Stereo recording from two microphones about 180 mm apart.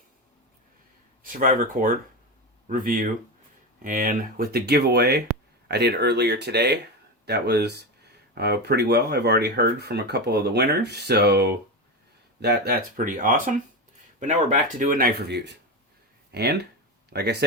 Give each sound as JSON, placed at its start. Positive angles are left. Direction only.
{"t": 1.2, "sound": "speech", "side_deg": -50}